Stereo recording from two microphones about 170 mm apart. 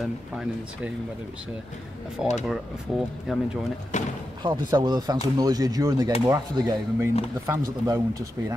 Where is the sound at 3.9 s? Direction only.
45° left (ahead or behind).